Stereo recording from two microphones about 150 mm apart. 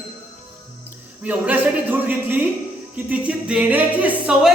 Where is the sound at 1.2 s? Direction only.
10° right (ahead or behind).